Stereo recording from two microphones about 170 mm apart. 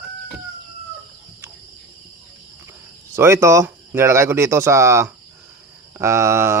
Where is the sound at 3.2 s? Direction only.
15° right (ahead or behind).